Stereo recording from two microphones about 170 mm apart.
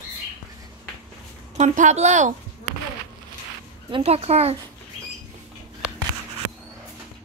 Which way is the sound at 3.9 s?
35° right (ahead or behind).